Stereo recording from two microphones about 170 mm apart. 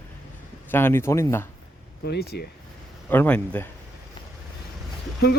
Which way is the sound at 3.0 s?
10° left (ahead or behind).